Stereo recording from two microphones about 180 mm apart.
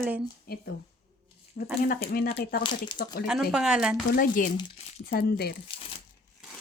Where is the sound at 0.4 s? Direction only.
60° left (ahead or behind).